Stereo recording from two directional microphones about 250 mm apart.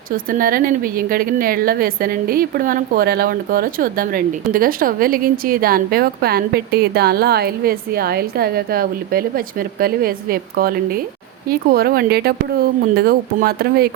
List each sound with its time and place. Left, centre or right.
0.3 s a woman's voice: right